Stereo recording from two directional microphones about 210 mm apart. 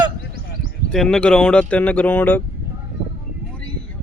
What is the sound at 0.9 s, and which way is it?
A man's voice, 5° left (ahead or behind).